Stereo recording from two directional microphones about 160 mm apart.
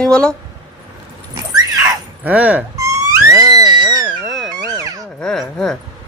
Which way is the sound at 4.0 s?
Centre (ahead or behind).